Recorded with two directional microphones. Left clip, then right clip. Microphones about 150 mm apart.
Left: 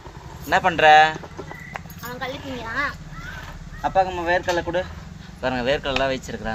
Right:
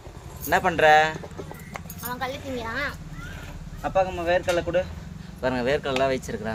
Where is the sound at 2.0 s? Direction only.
50° right (ahead or behind).